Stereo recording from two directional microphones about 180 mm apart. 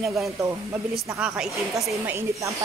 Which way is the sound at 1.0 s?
10° right (ahead or behind).